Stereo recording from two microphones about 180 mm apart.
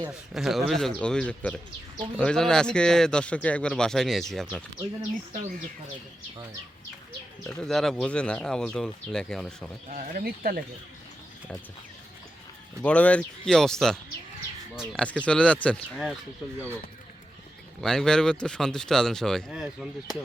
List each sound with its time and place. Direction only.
0.3 s speech: centre (ahead or behind)
7.6 s speech: centre (ahead or behind)
9.9 s speech: 50° right (ahead or behind)
12.8 s speech: 5° left (ahead or behind)
17.7 s speech: centre (ahead or behind)